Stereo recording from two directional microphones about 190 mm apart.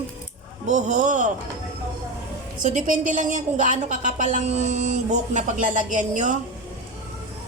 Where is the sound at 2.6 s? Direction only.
40° right (ahead or behind).